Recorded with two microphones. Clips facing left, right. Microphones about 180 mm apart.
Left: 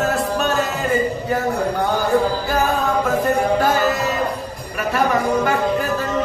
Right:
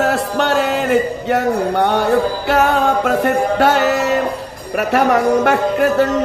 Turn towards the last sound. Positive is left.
turn(degrees=-70)  # may be behind; listen again after turning